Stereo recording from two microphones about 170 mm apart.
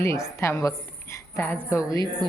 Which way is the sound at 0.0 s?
15° left (ahead or behind).